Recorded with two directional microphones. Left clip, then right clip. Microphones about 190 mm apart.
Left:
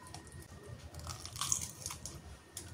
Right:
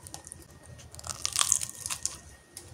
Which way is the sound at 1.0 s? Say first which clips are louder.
Right 12 dB; 50° right (ahead or behind).